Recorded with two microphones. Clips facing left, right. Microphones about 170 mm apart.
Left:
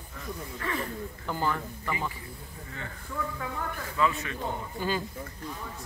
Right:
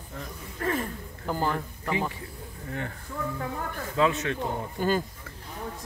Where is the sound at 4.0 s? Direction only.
80° right.